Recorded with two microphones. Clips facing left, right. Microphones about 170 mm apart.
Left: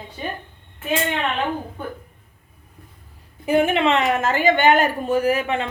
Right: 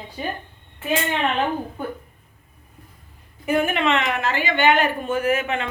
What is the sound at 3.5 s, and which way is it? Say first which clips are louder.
A woman's voice: left 3 dB; 25° left (ahead or behind).